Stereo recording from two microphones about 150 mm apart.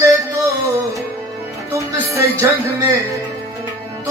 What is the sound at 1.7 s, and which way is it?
Speech, 20° right (ahead or behind).